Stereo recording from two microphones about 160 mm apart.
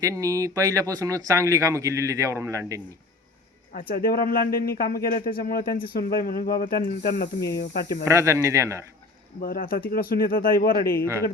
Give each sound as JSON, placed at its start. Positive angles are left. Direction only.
{"t": 0.0, "sound": "speech", "side_deg": -20}
{"t": 3.7, "sound": "speech", "side_deg": 60}
{"t": 8.0, "sound": "speech", "side_deg": -15}
{"t": 9.4, "sound": "speech", "side_deg": 65}